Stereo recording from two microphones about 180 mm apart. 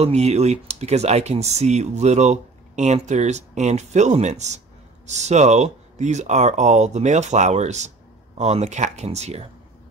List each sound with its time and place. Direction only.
0.0 s speech: 35° right (ahead or behind)